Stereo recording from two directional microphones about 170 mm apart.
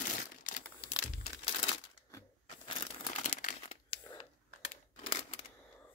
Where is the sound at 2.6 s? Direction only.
40° left (ahead or behind).